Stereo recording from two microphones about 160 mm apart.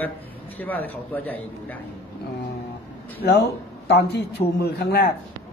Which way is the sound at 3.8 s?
90° left.